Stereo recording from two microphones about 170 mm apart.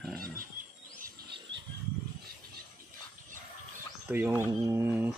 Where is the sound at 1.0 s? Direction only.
80° right.